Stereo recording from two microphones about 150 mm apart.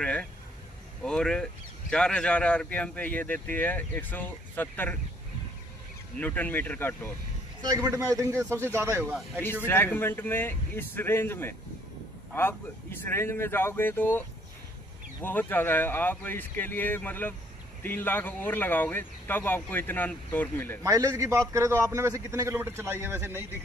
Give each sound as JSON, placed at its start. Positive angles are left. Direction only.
{"t": 0.0, "sound": "speech", "side_deg": 5}
{"t": 6.1, "sound": "speech", "side_deg": 10}
{"t": 7.6, "sound": "a man's voice", "side_deg": -25}
{"t": 9.7, "sound": "speech", "side_deg": 15}
{"t": 15.2, "sound": "speech", "side_deg": 10}
{"t": 20.8, "sound": "a man's voice", "side_deg": -25}